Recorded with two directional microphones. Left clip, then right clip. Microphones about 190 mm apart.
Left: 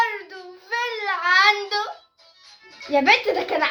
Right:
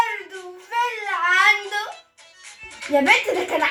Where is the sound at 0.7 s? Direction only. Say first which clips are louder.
Right 1 dB; 20° left (ahead or behind).